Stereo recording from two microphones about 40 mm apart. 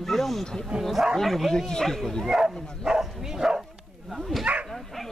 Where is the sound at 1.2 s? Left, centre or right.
Centre.